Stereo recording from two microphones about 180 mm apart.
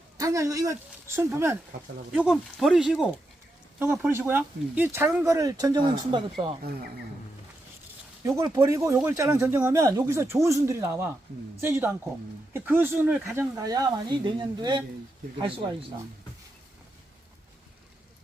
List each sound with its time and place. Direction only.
0.2 s speech: 20° right (ahead or behind)
2.1 s speech: 5° right (ahead or behind); by 6.6 s 25° right (ahead or behind)
8.4 s speech: 15° right (ahead or behind)